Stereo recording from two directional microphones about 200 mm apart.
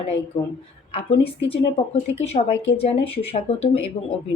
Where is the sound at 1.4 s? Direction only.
30° left (ahead or behind).